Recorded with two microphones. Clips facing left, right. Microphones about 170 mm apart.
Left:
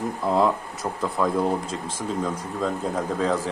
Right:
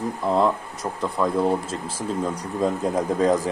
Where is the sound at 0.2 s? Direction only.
Centre (ahead or behind).